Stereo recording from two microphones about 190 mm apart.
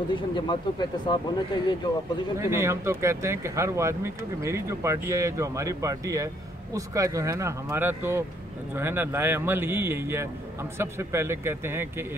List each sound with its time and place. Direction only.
0.1 s speech: 25° left (ahead or behind)
2.3 s speech: 15° right (ahead or behind)